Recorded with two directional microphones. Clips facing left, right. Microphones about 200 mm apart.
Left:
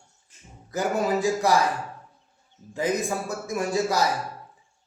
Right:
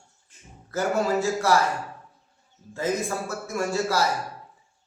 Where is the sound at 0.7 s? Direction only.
15° left (ahead or behind).